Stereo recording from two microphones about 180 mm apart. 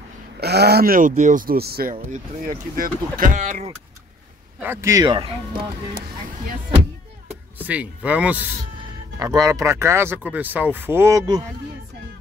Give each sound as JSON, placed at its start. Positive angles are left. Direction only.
{"t": 0.4, "sound": "speech", "side_deg": -65}
{"t": 2.0, "sound": "speech", "side_deg": -45}
{"t": 4.6, "sound": "speech", "side_deg": -15}
{"t": 7.5, "sound": "speech", "side_deg": -10}
{"t": 9.2, "sound": "speech", "side_deg": -20}